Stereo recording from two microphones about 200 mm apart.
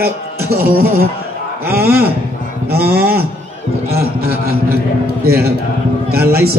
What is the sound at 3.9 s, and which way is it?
A man's voice, 50° right (ahead or behind).